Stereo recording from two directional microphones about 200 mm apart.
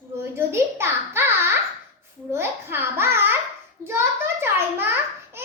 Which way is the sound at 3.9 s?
10° right (ahead or behind).